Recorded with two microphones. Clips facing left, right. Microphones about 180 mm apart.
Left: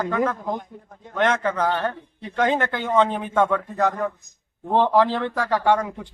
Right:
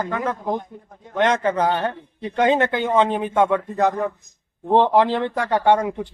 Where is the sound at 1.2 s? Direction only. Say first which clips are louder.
Right 2 dB; 20° right (ahead or behind).